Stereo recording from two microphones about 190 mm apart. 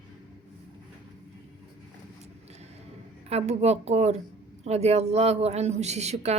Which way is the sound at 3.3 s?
35° right (ahead or behind).